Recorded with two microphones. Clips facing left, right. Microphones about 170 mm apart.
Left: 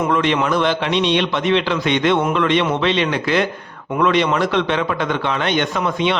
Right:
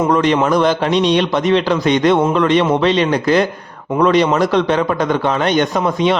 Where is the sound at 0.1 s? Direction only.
40° right (ahead or behind).